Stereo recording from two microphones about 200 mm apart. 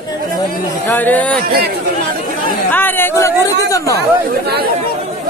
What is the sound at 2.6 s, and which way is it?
Speech, 10° left (ahead or behind).